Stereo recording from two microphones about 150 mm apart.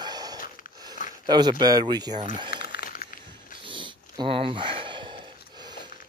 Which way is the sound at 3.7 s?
35° right (ahead or behind).